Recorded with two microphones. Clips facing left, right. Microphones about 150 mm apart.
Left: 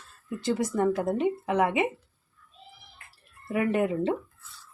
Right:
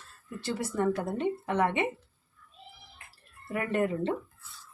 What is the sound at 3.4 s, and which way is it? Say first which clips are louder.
Speech: left 4 dB; 15° left (ahead or behind).